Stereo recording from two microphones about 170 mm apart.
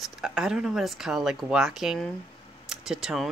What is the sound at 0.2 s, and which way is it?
Speech, 5° right (ahead or behind).